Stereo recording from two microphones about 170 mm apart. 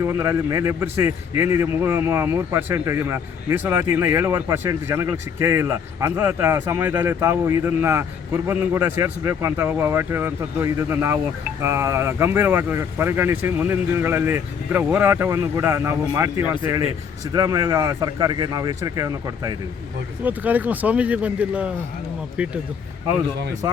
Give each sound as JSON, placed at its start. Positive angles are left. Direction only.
{"t": 0.0, "sound": "a man's voice", "side_deg": -15}
{"t": 17.3, "sound": "speech", "side_deg": -20}
{"t": 20.2, "sound": "a man's voice", "side_deg": -10}